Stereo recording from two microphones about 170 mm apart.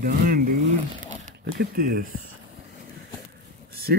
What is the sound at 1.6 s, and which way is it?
Speech, 65° right (ahead or behind).